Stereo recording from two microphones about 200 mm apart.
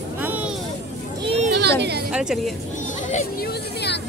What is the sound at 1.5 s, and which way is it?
Speech, 55° right (ahead or behind).